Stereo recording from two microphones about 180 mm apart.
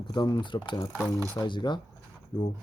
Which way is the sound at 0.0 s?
25° left (ahead or behind).